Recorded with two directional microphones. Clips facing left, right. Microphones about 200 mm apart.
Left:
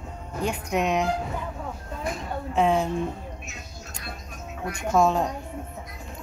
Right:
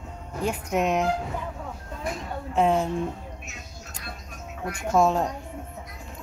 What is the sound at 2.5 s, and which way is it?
Speech, 5° right (ahead or behind).